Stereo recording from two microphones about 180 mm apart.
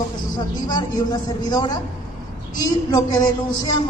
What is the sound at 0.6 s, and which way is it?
A man's voice, 20° left (ahead or behind).